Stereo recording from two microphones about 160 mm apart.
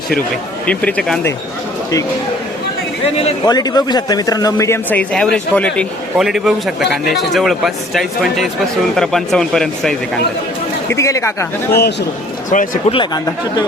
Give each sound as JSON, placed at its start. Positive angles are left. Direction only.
{"t": 0.7, "sound": "a man's voice", "side_deg": 10}
{"t": 3.4, "sound": "a man's voice", "side_deg": 25}
{"t": 10.8, "sound": "a man's voice", "side_deg": 20}
{"t": 11.7, "sound": "speech", "side_deg": 90}
{"t": 12.5, "sound": "speech", "side_deg": 55}